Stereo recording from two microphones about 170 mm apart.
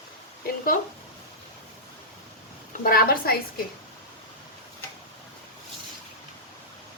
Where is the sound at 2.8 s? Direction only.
60° left (ahead or behind).